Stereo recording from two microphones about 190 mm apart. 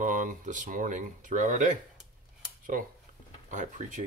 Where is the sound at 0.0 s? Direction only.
45° right (ahead or behind).